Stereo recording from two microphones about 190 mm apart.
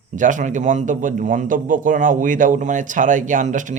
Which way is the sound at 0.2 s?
40° right (ahead or behind).